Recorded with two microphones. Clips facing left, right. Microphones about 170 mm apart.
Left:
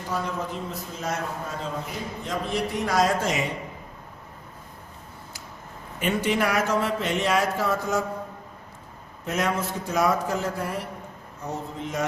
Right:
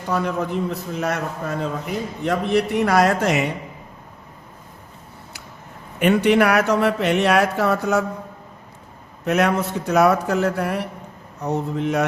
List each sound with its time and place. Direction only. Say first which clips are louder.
0.1 s a man's voice: right 7 dB; 65° right (ahead or behind)
6.0 s a man's voice: right 8 dB; 65° right (ahead or behind)
9.2 s a man's voice: right 7 dB; 65° right (ahead or behind)